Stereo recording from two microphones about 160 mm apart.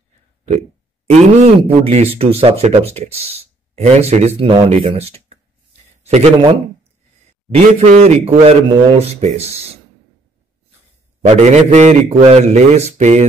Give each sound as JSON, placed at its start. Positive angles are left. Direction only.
{"t": 1.1, "sound": "speech", "side_deg": -40}
{"t": 11.3, "sound": "a man's voice", "side_deg": -45}